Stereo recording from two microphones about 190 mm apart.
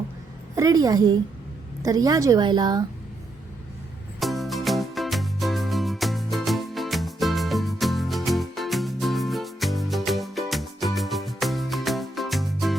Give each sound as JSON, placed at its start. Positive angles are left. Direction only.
{"t": 0.5, "sound": "a woman's voice", "side_deg": -20}
{"t": 4.2, "sound": "music", "side_deg": 0}